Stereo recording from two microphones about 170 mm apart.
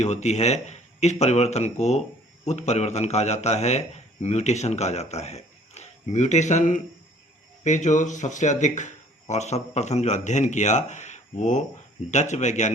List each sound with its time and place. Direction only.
0.0 s a man's voice: 40° left (ahead or behind)